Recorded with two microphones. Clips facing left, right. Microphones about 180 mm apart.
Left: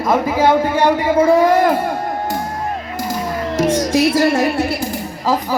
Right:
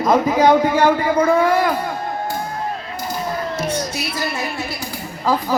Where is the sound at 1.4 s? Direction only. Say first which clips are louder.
Left 4 dB; 40° left (ahead or behind).